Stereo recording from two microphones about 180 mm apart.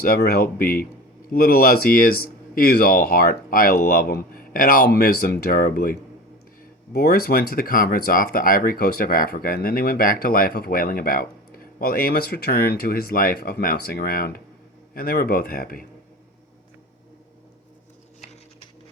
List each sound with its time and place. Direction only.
0.0 s speech: 55° left (ahead or behind)
6.9 s speech: 55° left (ahead or behind)